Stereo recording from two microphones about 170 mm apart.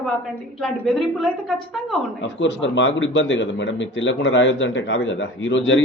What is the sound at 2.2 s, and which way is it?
A man's voice, 90° left.